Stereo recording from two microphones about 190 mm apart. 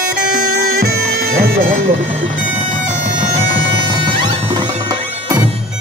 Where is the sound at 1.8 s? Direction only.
80° right.